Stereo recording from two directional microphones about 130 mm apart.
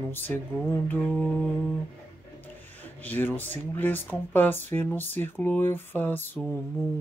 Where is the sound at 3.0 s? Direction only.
15° left (ahead or behind).